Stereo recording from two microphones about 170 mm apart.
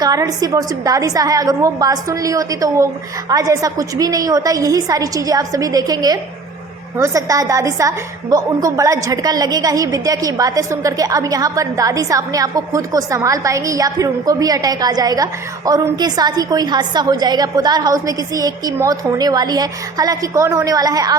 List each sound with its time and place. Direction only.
0.0 s a woman's voice: 20° right (ahead or behind)